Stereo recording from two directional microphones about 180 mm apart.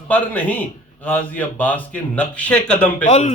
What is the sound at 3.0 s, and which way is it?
Speech, 40° left (ahead or behind).